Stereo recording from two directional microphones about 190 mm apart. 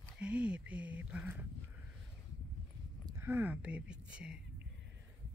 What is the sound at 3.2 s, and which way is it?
Speech, 10° right (ahead or behind).